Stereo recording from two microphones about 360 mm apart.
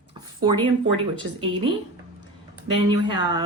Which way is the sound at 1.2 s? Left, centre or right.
Centre.